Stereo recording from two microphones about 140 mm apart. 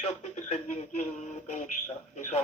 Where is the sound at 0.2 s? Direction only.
55° left (ahead or behind).